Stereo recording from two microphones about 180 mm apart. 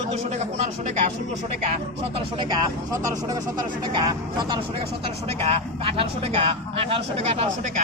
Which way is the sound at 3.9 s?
25° right (ahead or behind).